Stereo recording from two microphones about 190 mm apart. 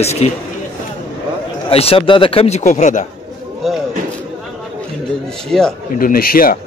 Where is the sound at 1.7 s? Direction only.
30° left (ahead or behind).